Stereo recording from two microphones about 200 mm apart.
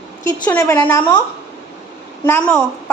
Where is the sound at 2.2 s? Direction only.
10° left (ahead or behind).